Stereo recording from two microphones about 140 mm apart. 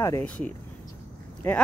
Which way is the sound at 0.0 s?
20° left (ahead or behind).